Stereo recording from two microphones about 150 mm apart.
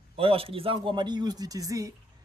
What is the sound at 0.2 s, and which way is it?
Speech, 40° right (ahead or behind).